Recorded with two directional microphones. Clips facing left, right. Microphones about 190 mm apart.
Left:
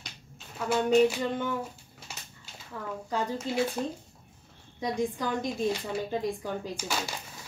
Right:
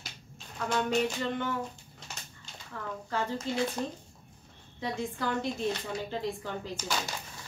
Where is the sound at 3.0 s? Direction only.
15° left (ahead or behind).